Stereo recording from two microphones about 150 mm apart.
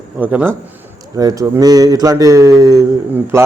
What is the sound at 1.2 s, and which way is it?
Speech, 25° right (ahead or behind).